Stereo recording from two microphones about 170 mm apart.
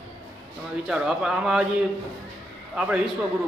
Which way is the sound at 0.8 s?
5° right (ahead or behind).